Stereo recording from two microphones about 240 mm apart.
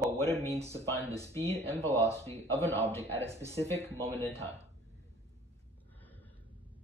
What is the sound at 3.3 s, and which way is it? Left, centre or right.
Speech, centre.